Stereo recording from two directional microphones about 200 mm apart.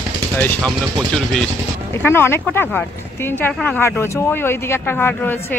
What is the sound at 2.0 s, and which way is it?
Speech, 10° left (ahead or behind).